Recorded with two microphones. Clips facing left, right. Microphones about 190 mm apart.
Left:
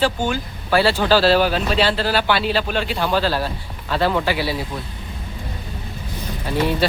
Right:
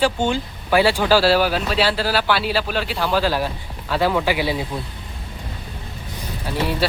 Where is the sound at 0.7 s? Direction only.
15° right (ahead or behind).